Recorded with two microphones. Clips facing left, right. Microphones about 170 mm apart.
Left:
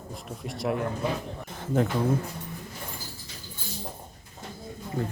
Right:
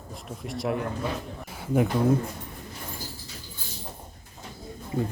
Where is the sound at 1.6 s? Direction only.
10° right (ahead or behind).